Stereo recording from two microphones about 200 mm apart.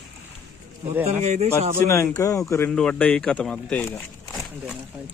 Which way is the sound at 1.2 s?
35° right (ahead or behind).